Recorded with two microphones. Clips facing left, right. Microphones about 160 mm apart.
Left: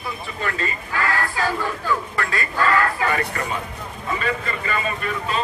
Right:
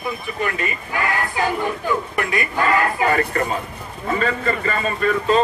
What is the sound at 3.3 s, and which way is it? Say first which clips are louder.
A man's voice: right 4 dB; 40° right (ahead or behind).